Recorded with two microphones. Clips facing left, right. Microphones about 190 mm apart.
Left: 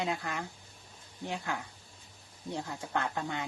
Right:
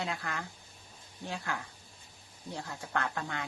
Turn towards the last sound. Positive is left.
turn(degrees=20)  # may be behind; listen again after turning